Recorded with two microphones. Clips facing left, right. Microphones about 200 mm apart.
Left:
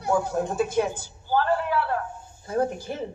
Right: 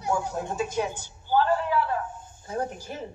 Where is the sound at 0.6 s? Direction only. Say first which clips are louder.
Left 3 dB; 55° left (ahead or behind).